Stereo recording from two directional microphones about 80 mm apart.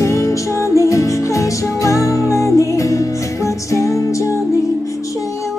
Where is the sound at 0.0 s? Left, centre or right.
Left.